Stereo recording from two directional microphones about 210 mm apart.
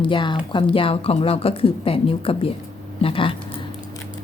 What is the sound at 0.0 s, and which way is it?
A woman's voice, 25° left (ahead or behind).